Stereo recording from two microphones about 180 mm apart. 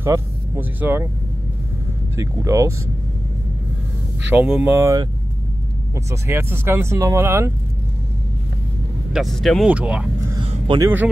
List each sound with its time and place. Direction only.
0.0 s speech: 10° right (ahead or behind)
2.1 s speech: 15° right (ahead or behind)
4.3 s speech: 10° right (ahead or behind)
6.0 s speech: 15° right (ahead or behind)
9.1 s speech: centre (ahead or behind)